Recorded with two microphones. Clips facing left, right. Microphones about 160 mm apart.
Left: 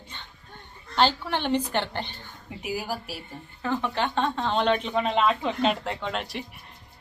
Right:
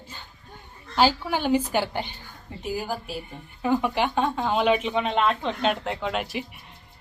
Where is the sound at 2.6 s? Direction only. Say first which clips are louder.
Right 2 dB; 5° left (ahead or behind).